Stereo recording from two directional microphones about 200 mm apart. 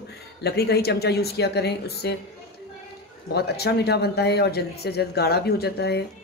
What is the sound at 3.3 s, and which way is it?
Speech, 55° left (ahead or behind).